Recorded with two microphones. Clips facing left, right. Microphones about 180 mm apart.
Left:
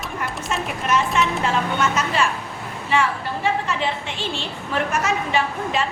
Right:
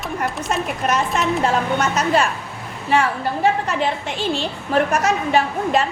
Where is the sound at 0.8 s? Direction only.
40° right (ahead or behind).